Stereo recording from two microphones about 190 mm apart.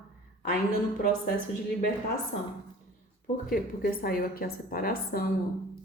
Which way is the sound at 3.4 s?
50° left (ahead or behind).